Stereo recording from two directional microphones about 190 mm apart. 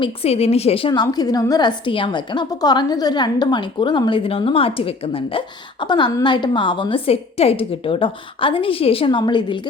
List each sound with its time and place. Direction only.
0.0 s a woman's voice: 30° left (ahead or behind)